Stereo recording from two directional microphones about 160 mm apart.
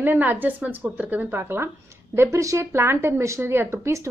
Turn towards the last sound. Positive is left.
turn(degrees=-15)  # may be behind; listen again after turning